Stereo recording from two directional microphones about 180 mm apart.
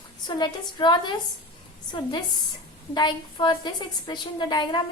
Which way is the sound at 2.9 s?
25° left (ahead or behind).